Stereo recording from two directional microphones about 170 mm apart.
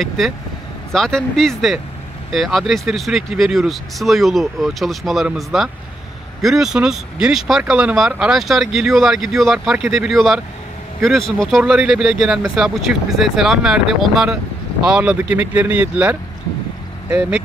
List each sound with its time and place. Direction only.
0.2 s speech: centre (ahead or behind)